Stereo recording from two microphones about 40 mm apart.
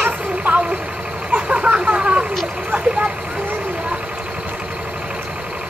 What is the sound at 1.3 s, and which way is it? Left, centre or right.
Vehicle, right.